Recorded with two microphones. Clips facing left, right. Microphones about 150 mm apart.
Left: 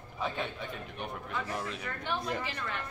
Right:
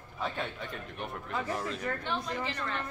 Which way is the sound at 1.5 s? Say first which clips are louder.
Right 3 dB; 5° left (ahead or behind).